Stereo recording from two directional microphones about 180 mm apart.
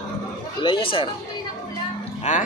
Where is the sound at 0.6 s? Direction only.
25° left (ahead or behind).